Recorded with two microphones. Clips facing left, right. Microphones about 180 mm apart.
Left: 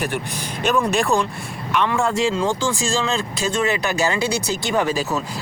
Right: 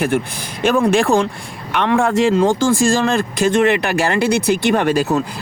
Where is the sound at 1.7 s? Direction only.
65° right (ahead or behind).